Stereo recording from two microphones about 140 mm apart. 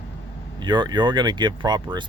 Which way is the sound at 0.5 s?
35° right (ahead or behind).